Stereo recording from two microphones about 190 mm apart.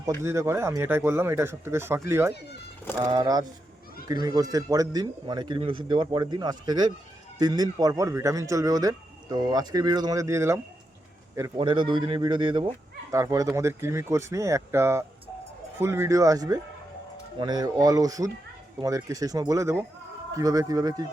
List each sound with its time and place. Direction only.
0.2 s speech: 15° right (ahead or behind)